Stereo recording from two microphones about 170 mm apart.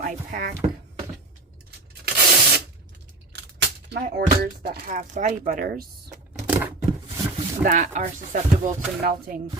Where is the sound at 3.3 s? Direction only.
90° right.